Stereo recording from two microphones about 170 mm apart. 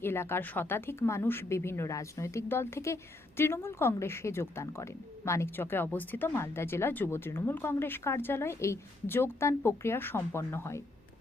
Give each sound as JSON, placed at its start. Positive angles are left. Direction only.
{"t": 0.0, "sound": "a woman's voice", "side_deg": 15}